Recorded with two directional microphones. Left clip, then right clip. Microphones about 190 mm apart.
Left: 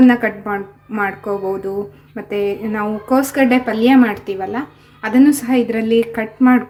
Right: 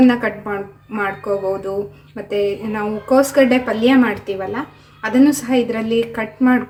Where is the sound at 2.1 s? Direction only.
20° left (ahead or behind).